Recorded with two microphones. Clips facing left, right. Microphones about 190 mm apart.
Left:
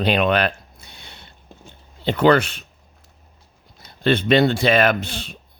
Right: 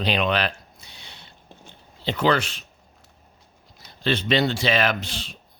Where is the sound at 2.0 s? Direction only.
55° left (ahead or behind).